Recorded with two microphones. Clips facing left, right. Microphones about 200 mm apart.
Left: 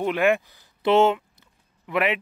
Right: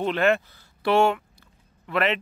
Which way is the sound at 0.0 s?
15° left (ahead or behind).